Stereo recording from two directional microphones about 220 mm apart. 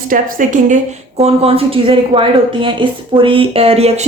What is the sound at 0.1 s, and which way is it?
Speech, 35° right (ahead or behind).